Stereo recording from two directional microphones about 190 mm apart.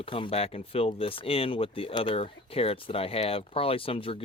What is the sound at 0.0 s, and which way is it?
Speech, 30° left (ahead or behind).